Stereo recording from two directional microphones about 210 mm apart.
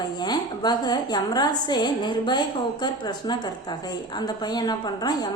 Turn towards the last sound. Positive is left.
turn(degrees=20)  # may be behind; listen again after turning